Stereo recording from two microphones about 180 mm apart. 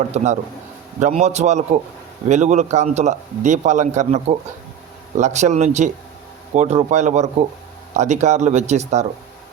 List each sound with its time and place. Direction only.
0.1 s a man's voice: 40° right (ahead or behind)